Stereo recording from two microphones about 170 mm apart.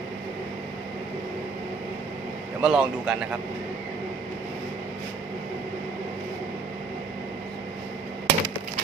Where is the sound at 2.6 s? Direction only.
5° right (ahead or behind).